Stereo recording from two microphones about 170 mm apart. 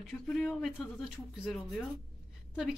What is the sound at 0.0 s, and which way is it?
Speech, centre (ahead or behind).